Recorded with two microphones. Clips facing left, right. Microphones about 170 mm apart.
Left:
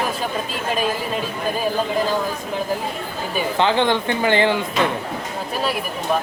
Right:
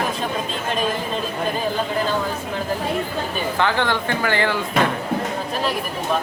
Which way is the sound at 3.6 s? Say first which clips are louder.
Left 3 dB; 20° left (ahead or behind).